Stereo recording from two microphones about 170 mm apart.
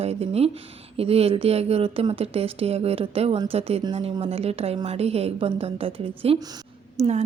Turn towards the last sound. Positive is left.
turn(degrees=-40)  # may be behind; listen again after turning